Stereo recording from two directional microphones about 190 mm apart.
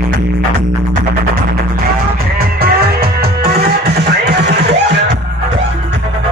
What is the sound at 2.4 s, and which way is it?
Music, 55° right (ahead or behind).